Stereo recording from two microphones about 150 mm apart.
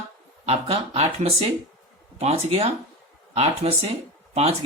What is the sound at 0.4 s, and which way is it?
Speech, 45° right (ahead or behind).